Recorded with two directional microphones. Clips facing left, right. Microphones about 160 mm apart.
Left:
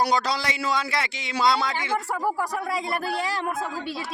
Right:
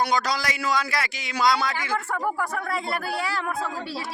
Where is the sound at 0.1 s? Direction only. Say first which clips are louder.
Left 1 dB; 25° left (ahead or behind).